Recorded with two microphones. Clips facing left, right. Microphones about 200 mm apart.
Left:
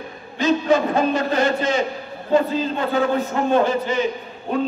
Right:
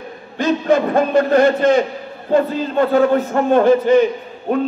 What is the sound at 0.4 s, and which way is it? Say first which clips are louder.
A man's voice: right 2 dB; 55° right (ahead or behind).